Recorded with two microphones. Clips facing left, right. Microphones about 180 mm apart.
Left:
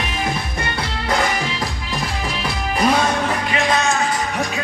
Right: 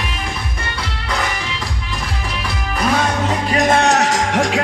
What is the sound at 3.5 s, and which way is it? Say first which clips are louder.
Music: right 6 dB; 45° right (ahead or behind).